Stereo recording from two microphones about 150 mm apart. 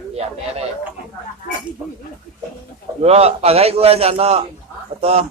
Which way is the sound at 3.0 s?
45° right (ahead or behind).